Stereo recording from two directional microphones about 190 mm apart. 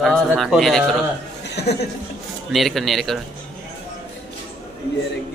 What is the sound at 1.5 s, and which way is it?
Speech, 60° left (ahead or behind).